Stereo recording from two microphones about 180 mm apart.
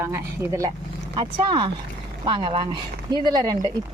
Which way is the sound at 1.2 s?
25° right (ahead or behind).